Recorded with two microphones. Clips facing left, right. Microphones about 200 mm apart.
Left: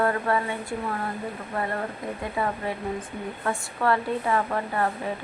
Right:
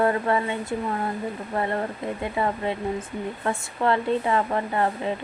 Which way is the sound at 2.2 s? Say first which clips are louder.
Right 2 dB; 25° right (ahead or behind).